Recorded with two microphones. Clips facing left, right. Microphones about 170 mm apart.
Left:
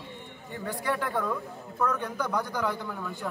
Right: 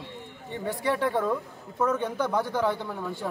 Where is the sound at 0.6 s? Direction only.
25° right (ahead or behind).